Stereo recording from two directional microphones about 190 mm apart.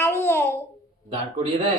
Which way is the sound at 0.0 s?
15° left (ahead or behind).